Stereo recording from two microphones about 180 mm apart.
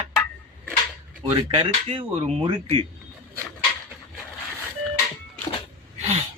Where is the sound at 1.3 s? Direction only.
30° right (ahead or behind).